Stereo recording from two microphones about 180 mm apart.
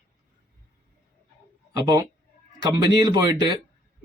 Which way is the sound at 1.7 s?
25° right (ahead or behind).